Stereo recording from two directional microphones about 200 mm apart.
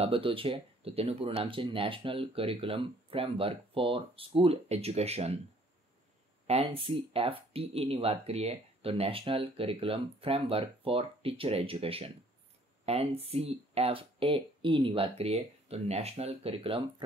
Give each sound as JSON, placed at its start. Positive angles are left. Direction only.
{"t": 0.0, "sound": "speech", "side_deg": -25}
{"t": 6.4, "sound": "speech", "side_deg": -30}